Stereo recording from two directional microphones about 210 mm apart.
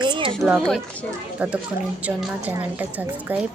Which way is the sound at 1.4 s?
5° right (ahead or behind).